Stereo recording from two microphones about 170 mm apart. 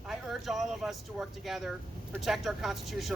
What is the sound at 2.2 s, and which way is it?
Speech, centre (ahead or behind).